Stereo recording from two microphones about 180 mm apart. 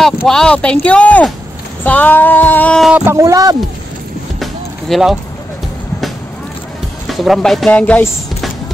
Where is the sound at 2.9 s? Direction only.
10° right (ahead or behind).